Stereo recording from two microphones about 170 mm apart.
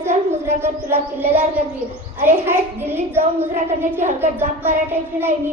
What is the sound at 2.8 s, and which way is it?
A woman's voice, 15° right (ahead or behind).